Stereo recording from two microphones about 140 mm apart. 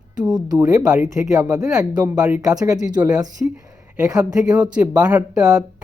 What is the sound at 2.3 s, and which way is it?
Speech, 25° right (ahead or behind).